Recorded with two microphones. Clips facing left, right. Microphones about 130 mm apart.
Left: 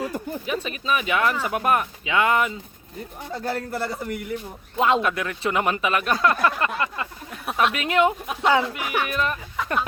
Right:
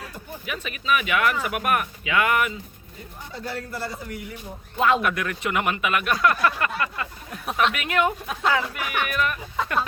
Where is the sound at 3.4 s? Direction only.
55° left (ahead or behind).